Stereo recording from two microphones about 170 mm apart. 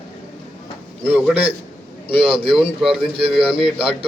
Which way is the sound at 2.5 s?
Centre (ahead or behind).